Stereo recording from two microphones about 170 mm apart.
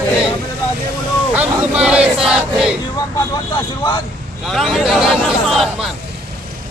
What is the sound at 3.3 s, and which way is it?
Speech, 25° left (ahead or behind).